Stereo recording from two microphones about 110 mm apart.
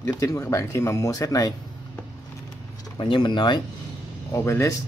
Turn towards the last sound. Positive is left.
turn(degrees=25)  # may be behind; listen again after turning